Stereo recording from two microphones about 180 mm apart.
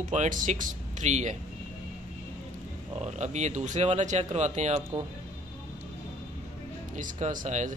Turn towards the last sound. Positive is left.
turn(degrees=-45)  # may be behind; listen again after turning